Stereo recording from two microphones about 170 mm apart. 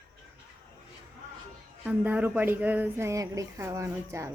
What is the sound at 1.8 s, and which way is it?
A woman's voice, 10° right (ahead or behind).